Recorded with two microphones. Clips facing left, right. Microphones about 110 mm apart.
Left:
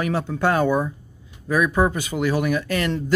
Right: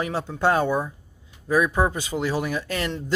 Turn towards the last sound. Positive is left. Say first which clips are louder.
# left 4 dB
turn(degrees=-30)  # may be behind; listen again after turning